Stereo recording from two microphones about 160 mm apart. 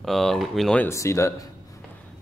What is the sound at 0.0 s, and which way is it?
Speech, centre (ahead or behind).